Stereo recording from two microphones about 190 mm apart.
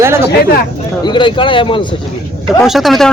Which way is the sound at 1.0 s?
25° left (ahead or behind).